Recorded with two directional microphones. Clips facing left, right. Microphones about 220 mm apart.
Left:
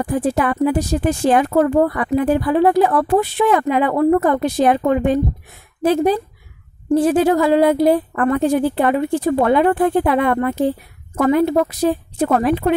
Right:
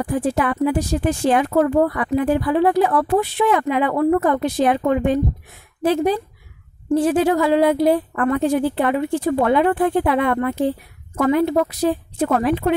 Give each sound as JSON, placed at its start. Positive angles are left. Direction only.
{"t": 0.0, "sound": "speech", "side_deg": 40}